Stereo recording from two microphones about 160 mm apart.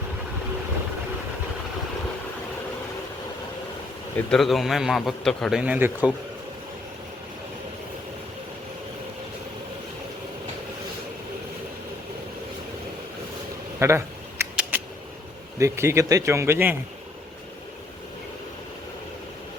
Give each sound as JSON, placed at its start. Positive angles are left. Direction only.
{"t": 4.3, "sound": "a man's voice", "side_deg": 0}
{"t": 13.7, "sound": "a sound", "side_deg": -15}
{"t": 15.5, "sound": "speech", "side_deg": -15}